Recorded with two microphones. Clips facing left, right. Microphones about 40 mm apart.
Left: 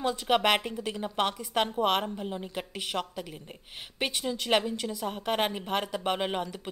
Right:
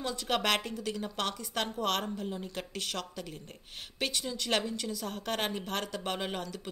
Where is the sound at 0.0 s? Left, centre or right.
Left.